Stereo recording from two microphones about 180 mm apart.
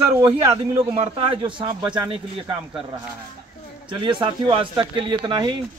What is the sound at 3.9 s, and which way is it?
Speech, 25° right (ahead or behind).